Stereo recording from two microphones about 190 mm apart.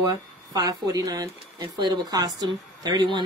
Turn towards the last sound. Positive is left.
turn(degrees=-20)  # may be behind; listen again after turning